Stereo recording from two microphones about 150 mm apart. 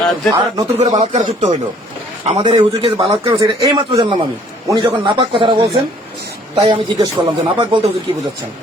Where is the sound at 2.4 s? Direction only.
30° right (ahead or behind).